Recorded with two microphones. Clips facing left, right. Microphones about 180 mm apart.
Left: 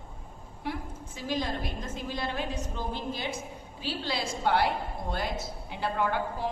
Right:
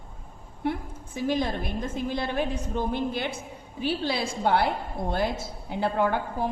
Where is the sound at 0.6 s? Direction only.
55° right (ahead or behind).